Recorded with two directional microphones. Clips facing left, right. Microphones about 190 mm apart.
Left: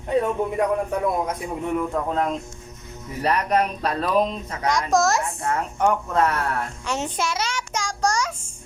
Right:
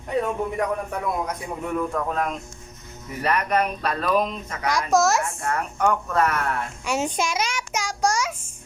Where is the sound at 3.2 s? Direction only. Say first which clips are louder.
Left 1 dB; 35° left (ahead or behind).